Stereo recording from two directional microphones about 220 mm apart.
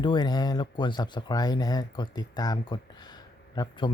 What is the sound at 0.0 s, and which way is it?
Speech, 20° left (ahead or behind).